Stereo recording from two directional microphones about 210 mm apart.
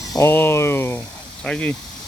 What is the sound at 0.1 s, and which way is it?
Speech, 10° left (ahead or behind).